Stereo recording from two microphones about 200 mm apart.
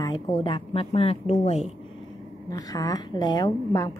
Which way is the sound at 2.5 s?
20° left (ahead or behind).